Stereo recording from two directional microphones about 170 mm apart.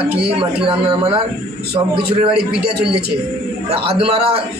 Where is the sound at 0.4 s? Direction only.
30° right (ahead or behind).